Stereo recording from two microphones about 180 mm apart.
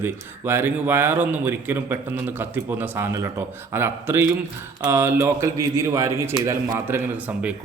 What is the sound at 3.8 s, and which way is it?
A man's voice, 10° right (ahead or behind).